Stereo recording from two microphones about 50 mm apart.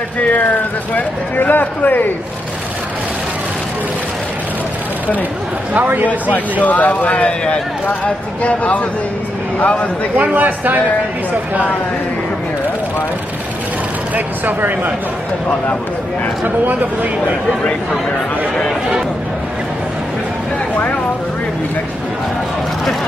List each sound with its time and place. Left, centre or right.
0.9 s a man's voice: left
6.6 s a man's voice: left
10.1 s speech: right
14.1 s speech: right
16.4 s speech: right